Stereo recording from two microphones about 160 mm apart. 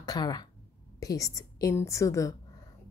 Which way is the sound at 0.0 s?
25° left (ahead or behind).